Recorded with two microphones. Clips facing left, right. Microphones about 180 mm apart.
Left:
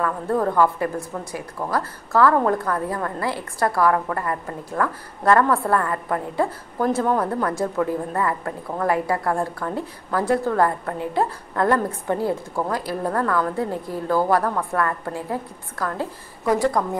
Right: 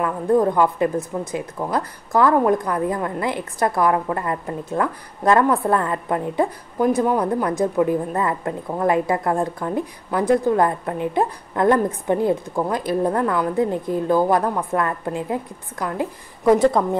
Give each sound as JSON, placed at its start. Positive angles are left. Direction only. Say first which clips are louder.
{"t": 0.0, "sound": "speech", "louder": "right 4 dB", "side_deg": -15}